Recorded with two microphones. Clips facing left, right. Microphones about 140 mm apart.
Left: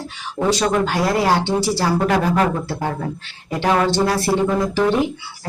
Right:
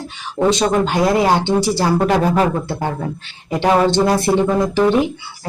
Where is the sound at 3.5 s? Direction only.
20° right (ahead or behind).